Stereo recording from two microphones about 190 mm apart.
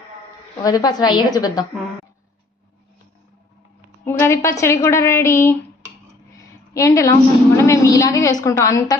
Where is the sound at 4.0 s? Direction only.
15° left (ahead or behind).